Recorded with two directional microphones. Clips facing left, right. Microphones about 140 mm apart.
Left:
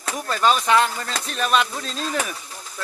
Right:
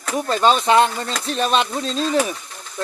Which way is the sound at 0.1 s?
30° right (ahead or behind).